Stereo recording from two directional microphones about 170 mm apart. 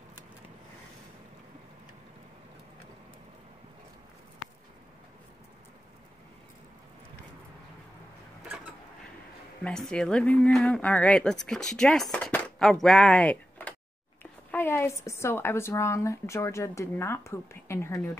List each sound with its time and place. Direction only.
9.6 s a woman's voice: 5° left (ahead or behind)